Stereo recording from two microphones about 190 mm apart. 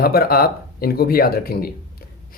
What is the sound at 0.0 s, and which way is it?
Speech, 50° left (ahead or behind).